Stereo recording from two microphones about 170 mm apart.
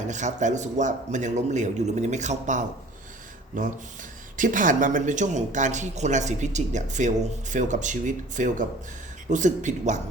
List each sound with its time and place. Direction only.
0.1 s speech: 45° right (ahead or behind)
4.4 s speech: 50° right (ahead or behind)